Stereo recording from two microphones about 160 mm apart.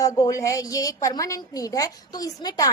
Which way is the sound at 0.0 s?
20° left (ahead or behind).